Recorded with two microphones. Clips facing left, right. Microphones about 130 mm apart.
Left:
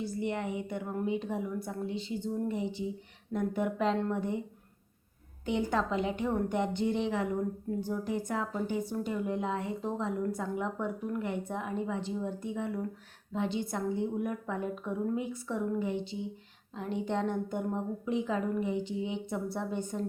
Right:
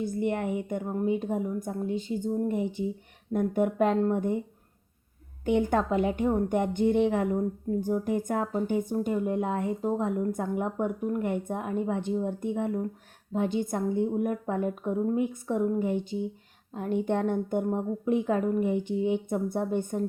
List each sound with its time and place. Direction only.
0.0 s a woman's voice: 50° right (ahead or behind)
5.5 s a woman's voice: 50° right (ahead or behind)